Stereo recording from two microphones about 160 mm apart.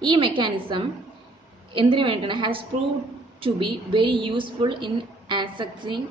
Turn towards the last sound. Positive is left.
turn(degrees=-30)  # may be behind; listen again after turning